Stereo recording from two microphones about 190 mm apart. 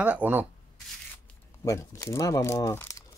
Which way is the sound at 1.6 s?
15° left (ahead or behind).